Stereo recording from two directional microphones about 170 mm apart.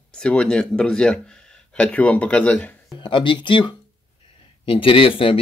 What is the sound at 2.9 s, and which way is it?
Speech, 25° left (ahead or behind).